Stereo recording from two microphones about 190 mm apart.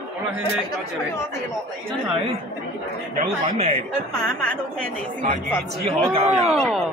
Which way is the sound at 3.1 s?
35° right (ahead or behind).